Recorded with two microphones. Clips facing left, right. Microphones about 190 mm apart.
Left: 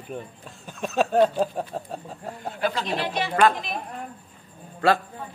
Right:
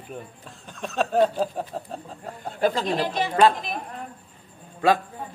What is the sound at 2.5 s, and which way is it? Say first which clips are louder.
Speech: right 4 dB; 45° right (ahead or behind).